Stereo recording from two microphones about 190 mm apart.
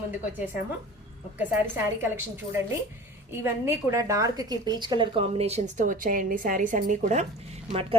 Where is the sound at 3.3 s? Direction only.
10° right (ahead or behind).